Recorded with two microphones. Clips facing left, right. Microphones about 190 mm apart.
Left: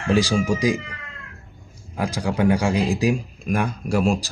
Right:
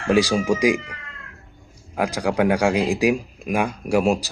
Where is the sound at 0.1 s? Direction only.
15° right (ahead or behind).